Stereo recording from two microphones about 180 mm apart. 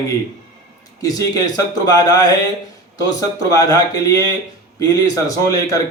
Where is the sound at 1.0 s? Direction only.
20° left (ahead or behind).